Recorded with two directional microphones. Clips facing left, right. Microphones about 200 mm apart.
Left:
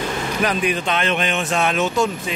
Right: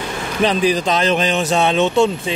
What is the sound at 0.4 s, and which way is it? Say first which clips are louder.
Speech: right 6 dB; 30° right (ahead or behind).